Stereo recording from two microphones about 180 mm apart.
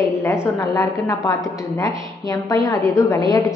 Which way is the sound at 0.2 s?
15° left (ahead or behind).